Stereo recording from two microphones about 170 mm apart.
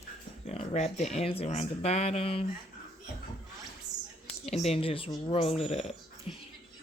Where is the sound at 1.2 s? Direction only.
35° left (ahead or behind).